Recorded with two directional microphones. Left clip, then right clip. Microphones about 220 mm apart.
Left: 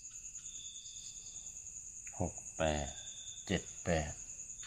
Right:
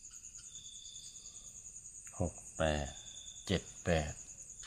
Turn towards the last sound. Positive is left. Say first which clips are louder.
# right 1 dB
turn(degrees=-20)  # may be behind; listen again after turning